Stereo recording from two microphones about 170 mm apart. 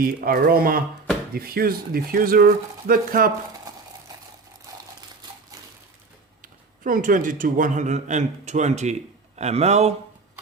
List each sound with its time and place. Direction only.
0.0 s speech: 60° right (ahead or behind)
6.4 s a man's voice: 50° right (ahead or behind)